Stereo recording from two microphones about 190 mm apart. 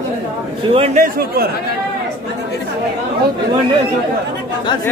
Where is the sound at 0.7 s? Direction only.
35° right (ahead or behind).